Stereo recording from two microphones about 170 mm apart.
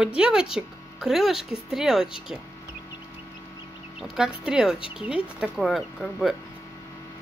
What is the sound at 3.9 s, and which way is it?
Speech, 5° right (ahead or behind).